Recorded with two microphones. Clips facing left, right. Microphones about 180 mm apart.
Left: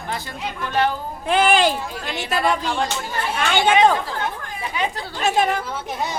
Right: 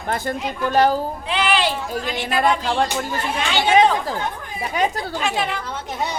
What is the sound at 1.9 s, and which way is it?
Speech, 45° right (ahead or behind).